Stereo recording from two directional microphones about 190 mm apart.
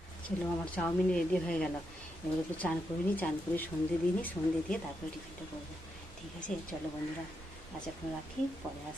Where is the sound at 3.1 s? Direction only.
10° left (ahead or behind).